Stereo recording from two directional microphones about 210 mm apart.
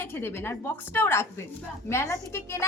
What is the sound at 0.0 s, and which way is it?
A woman's voice, 10° left (ahead or behind).